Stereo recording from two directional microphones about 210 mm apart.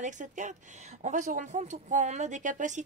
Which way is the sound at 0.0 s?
35° right (ahead or behind).